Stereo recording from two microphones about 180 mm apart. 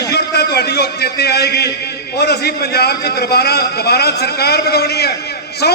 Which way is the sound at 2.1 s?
65° left (ahead or behind).